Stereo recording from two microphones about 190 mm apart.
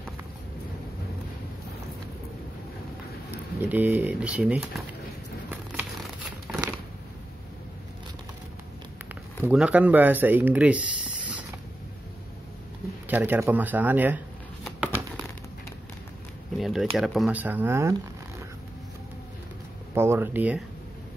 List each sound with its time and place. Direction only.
3.6 s speech: 10° right (ahead or behind)
9.1 s speech: 10° right (ahead or behind)
13.1 s speech: 10° right (ahead or behind)
16.5 s speech: centre (ahead or behind)
19.9 s speech: 10° right (ahead or behind)